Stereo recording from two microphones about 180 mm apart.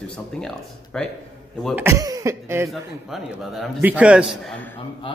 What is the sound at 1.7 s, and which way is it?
Speech, 15° right (ahead or behind).